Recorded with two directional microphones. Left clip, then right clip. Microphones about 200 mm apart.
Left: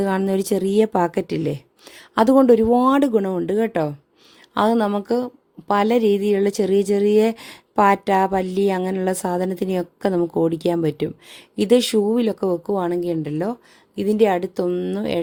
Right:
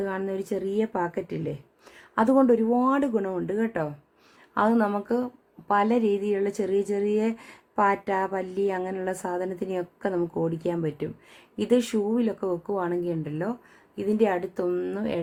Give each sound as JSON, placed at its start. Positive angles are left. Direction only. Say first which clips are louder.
{"t": 0.0, "sound": "a woman's voice", "louder": "left 8 dB", "side_deg": 55}
{"t": 2.1, "sound": "a woman's voice", "louder": "left 7 dB", "side_deg": 40}